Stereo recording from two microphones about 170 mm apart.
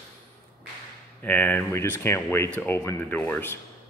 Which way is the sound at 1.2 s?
10° left (ahead or behind).